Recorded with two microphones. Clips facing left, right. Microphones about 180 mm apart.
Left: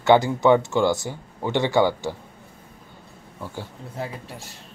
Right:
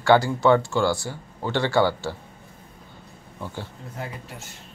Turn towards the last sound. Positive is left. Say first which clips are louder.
# left 2 dB
turn(degrees=35)  # may be behind; listen again after turning